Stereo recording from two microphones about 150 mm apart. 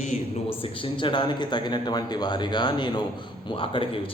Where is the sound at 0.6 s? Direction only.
35° left (ahead or behind).